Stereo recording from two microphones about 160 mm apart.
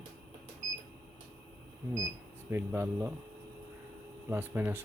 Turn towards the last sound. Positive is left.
turn(degrees=-15)  # may be behind; listen again after turning